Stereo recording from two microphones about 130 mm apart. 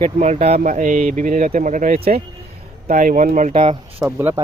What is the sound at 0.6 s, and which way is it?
Speech, 85° right.